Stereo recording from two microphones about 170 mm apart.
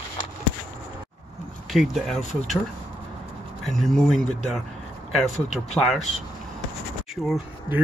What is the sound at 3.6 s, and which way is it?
Speech, centre (ahead or behind).